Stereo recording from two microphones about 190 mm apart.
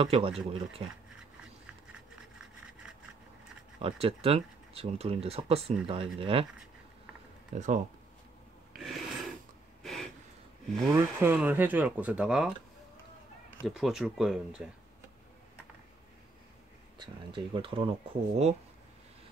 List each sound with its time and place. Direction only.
0.0 s speech: 30° right (ahead or behind)
3.8 s speech: 30° right (ahead or behind)
7.5 s speech: 40° right (ahead or behind)
8.8 s a sound: centre (ahead or behind)
10.9 s speech: 15° right (ahead or behind)
13.7 s speech: centre (ahead or behind)
17.0 s speech: 25° right (ahead or behind)